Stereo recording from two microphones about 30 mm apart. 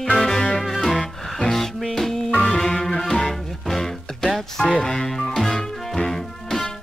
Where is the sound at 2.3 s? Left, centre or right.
Left.